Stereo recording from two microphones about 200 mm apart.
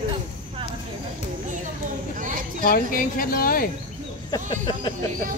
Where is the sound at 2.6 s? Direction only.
45° left (ahead or behind).